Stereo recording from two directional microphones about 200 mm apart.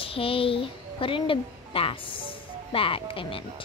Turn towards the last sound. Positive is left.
turn(degrees=25)  # may be behind; listen again after turning